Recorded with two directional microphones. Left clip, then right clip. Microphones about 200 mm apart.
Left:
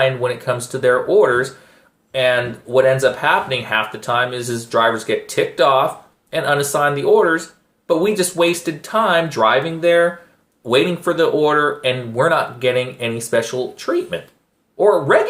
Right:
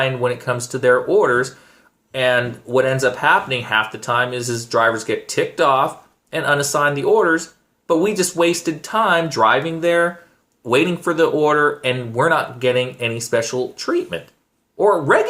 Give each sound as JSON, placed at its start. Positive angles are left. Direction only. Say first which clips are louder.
{"t": 0.0, "sound": "speech", "louder": "left 2 dB", "side_deg": -25}